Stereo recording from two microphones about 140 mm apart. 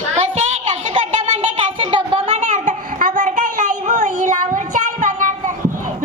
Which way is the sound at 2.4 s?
60° right (ahead or behind).